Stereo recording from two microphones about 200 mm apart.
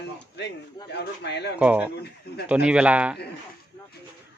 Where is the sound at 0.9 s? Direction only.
60° left (ahead or behind).